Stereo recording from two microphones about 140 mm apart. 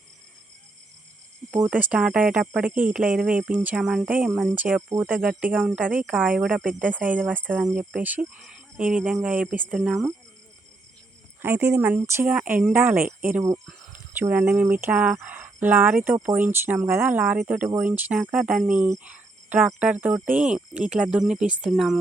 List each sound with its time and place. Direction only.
1.5 s speech: 15° right (ahead or behind)
11.4 s speech: 15° right (ahead or behind)
13.2 s cricket: 20° right (ahead or behind)
13.9 s speech: 15° right (ahead or behind)